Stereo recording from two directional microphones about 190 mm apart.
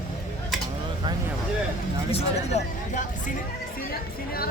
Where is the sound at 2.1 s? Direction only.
40° left (ahead or behind).